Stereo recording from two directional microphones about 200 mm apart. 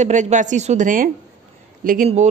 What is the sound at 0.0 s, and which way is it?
A woman's voice, 35° right (ahead or behind).